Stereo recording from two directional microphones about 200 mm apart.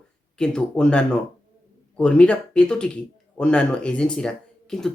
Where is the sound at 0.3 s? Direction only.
5° left (ahead or behind).